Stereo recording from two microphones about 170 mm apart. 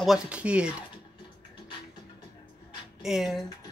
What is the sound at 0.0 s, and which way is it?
Speech, 5° right (ahead or behind).